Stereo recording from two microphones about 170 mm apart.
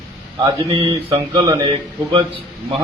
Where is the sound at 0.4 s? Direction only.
25° right (ahead or behind).